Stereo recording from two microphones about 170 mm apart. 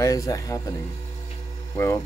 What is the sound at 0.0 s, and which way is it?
Speech, 20° left (ahead or behind).